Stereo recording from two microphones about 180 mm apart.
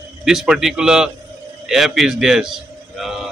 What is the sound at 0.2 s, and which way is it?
Speech, 5° right (ahead or behind).